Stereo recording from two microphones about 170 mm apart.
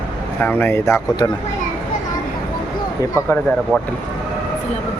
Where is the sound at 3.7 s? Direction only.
5° left (ahead or behind).